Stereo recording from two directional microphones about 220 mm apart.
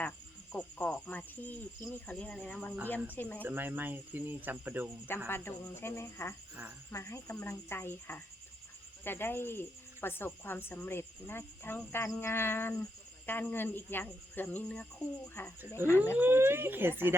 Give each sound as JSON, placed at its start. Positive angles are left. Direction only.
{"t": 0.5, "sound": "cricket", "side_deg": 5}
{"t": 3.4, "sound": "speech", "side_deg": -10}
{"t": 5.3, "sound": "cricket", "side_deg": 10}
{"t": 16.1, "sound": "speech", "side_deg": -10}